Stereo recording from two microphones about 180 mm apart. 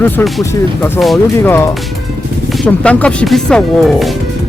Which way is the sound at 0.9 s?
Centre (ahead or behind).